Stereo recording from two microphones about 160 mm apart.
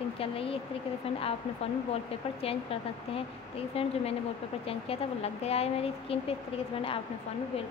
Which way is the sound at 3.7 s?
40° left (ahead or behind).